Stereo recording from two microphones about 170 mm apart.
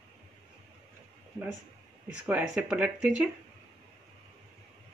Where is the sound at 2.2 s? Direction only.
5° right (ahead or behind).